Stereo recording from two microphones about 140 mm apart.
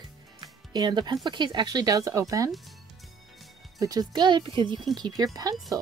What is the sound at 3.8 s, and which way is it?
A woman's voice, 25° right (ahead or behind).